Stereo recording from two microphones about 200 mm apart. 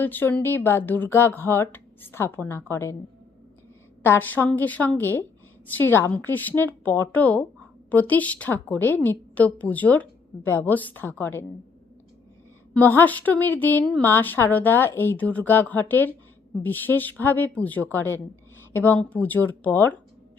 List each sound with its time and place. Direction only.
0.0 s a woman's voice: 10° left (ahead or behind)
4.0 s a woman's voice: 10° left (ahead or behind)
12.7 s a woman's voice: 10° left (ahead or behind)